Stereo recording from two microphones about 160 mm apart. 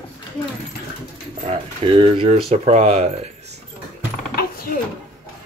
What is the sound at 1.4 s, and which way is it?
Speech, 40° right (ahead or behind).